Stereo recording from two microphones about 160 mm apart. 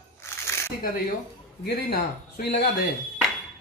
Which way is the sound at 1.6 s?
70° left (ahead or behind).